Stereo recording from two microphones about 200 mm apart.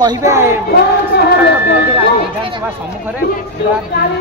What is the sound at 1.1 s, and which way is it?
Speech, 60° left (ahead or behind).